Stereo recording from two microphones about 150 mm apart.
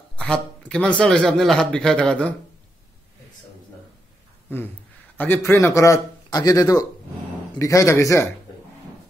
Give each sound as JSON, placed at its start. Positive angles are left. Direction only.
{"t": 0.1, "sound": "a man's voice", "side_deg": 5}
{"t": 5.1, "sound": "a man's voice", "side_deg": 15}